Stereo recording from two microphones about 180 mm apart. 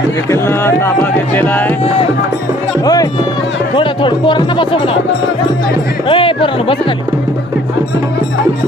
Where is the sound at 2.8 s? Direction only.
20° left (ahead or behind).